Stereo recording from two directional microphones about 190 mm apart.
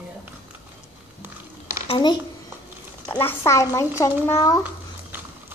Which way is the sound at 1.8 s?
25° left (ahead or behind).